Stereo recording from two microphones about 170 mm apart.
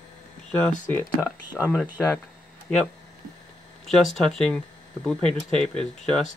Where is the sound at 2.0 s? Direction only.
5° left (ahead or behind).